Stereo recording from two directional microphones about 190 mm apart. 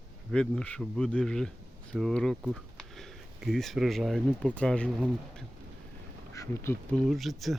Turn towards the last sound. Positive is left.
turn(degrees=0)  # may be behind; listen again after turning